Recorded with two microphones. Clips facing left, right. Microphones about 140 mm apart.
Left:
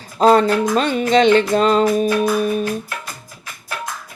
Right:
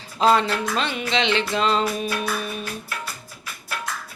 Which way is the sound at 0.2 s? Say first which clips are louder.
Left 6 dB; 45° left (ahead or behind).